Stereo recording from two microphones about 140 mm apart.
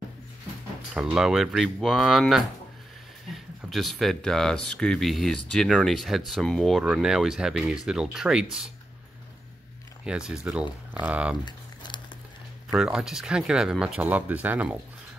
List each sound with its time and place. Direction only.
0.9 s speech: 5° right (ahead or behind)
6.8 s speech: 10° right (ahead or behind)
10.0 s speech: 5° right (ahead or behind)
11.4 s crumpling: 35° left (ahead or behind)
12.7 s speech: 5° right (ahead or behind)